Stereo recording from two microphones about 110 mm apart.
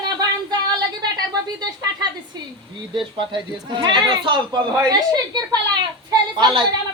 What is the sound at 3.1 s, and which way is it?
A woman's voice, 45° right (ahead or behind).